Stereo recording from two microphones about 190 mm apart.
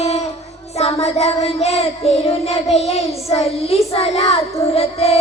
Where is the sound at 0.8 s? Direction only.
35° left (ahead or behind).